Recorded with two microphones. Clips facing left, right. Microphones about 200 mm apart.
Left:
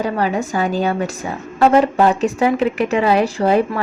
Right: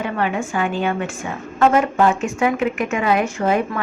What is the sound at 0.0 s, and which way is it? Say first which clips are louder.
A woman's voice: left 3 dB; 35° left (ahead or behind).